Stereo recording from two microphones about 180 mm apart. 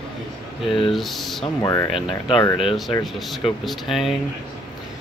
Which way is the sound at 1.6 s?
20° left (ahead or behind).